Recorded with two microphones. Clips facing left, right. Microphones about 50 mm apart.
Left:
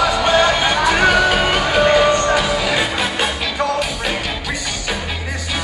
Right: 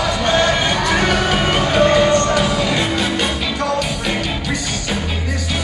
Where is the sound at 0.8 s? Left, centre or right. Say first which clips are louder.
Left 3 dB; centre.